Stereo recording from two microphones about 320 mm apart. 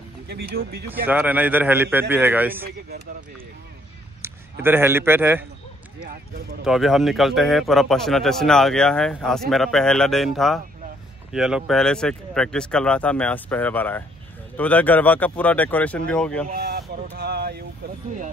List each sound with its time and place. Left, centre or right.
0.3 s speech: right
1.0 s a man's voice: centre
4.2 s speech: centre
6.6 s a man's voice: centre
16.4 s speech: right